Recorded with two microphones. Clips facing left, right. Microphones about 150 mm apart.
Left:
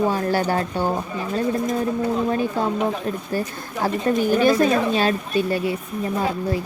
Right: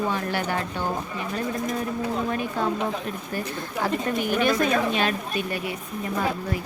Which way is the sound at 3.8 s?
35° left (ahead or behind).